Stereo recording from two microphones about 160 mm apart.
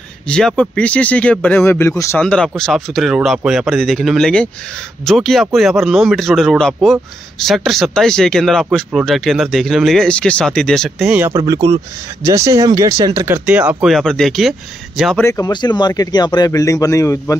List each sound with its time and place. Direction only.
0.3 s speech: 5° left (ahead or behind)
2.2 s speech: 5° left (ahead or behind)
11.1 s speech: 15° right (ahead or behind); by 14.5 s centre (ahead or behind)
15.1 s speech: 20° left (ahead or behind)